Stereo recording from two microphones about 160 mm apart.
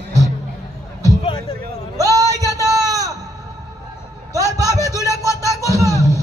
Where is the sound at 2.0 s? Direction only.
20° right (ahead or behind).